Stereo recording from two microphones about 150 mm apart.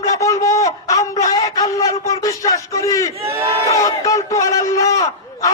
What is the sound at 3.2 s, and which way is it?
Speech, 40° right (ahead or behind).